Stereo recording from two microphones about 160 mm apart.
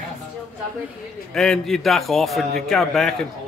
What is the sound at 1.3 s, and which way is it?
A man's voice, 5° left (ahead or behind).